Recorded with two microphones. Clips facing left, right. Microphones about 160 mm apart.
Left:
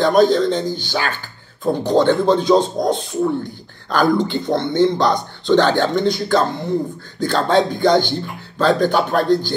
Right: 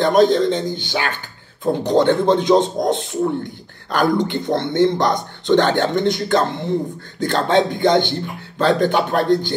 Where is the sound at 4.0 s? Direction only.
20° right (ahead or behind).